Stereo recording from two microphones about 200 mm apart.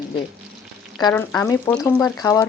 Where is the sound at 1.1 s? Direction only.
15° left (ahead or behind).